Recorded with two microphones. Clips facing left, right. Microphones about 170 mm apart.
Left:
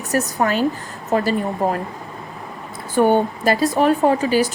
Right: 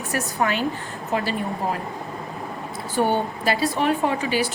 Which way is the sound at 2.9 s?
45° left (ahead or behind).